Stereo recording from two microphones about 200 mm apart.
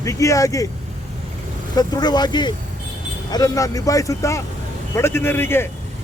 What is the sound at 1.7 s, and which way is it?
Speech, 20° left (ahead or behind).